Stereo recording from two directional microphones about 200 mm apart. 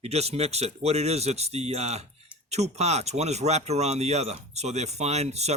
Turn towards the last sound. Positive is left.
turn(degrees=-35)  # may be behind; listen again after turning